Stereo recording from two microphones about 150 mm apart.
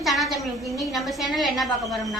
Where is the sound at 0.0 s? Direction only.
Centre (ahead or behind).